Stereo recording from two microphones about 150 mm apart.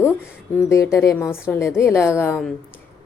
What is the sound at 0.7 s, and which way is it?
A woman's voice, 20° left (ahead or behind).